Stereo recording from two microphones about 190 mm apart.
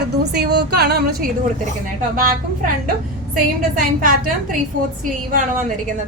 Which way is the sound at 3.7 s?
45° right (ahead or behind).